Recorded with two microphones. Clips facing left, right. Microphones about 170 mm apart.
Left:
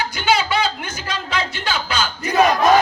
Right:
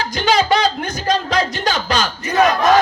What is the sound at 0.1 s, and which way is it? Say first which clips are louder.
Music: right 6 dB; 40° right (ahead or behind).